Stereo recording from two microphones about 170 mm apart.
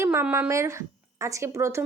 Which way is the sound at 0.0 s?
15° right (ahead or behind).